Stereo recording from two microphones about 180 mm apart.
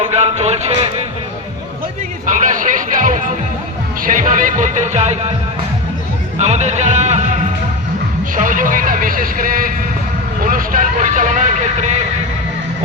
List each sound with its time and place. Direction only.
0.0 s music: 35° right (ahead or behind)
2.2 s music: 45° right (ahead or behind)
4.0 s speech: 45° right (ahead or behind)
6.4 s a man's voice: 40° right (ahead or behind)
8.4 s speech: 45° right (ahead or behind)
10.4 s vehicle: 50° right (ahead or behind)